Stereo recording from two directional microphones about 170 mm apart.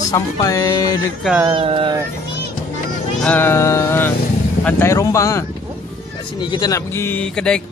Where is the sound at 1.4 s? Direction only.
25° right (ahead or behind).